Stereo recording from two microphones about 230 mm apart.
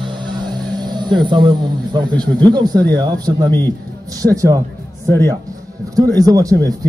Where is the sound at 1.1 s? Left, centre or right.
Centre.